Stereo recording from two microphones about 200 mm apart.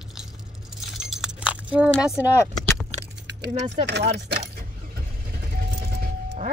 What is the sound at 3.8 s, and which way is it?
Speech, 55° right (ahead or behind).